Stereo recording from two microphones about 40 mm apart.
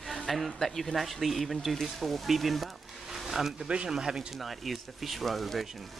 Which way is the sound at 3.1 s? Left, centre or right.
Centre.